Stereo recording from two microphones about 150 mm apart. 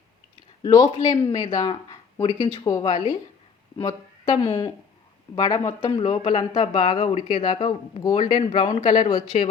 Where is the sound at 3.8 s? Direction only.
25° left (ahead or behind).